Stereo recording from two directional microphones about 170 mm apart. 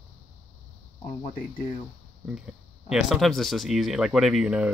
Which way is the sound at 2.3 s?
5° right (ahead or behind).